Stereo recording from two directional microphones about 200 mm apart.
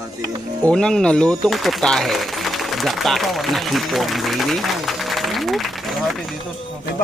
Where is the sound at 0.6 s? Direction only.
5° left (ahead or behind).